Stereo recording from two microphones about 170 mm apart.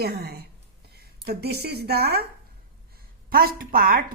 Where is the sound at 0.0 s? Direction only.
70° right (ahead or behind).